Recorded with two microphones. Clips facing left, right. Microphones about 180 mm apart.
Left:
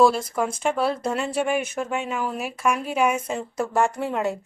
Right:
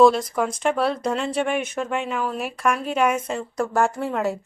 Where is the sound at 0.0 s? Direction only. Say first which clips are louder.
Right 3 dB; 5° left (ahead or behind).